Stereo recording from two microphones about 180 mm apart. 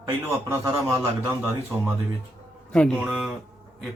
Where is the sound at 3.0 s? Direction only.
5° right (ahead or behind).